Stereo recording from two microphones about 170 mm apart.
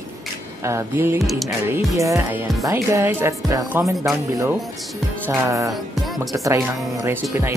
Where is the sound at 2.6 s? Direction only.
15° right (ahead or behind).